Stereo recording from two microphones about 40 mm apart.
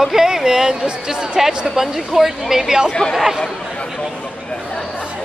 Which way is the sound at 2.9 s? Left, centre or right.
Left.